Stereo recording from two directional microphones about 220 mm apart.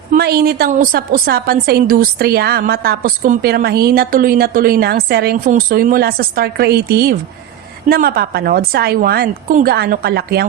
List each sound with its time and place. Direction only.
0.1 s a woman's voice: 45° right (ahead or behind)